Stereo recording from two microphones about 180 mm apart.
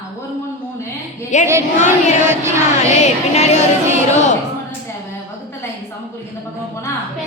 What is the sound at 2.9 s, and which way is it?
Speech, 40° left (ahead or behind).